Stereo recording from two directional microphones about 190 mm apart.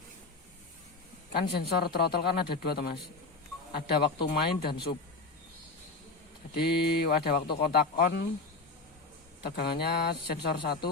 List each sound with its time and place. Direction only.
1.3 s speech: 55° left (ahead or behind)
6.6 s speech: 55° left (ahead or behind)
9.4 s speech: 55° left (ahead or behind)